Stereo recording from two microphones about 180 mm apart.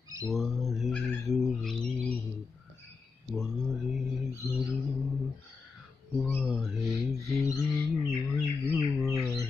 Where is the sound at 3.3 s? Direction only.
Centre (ahead or behind).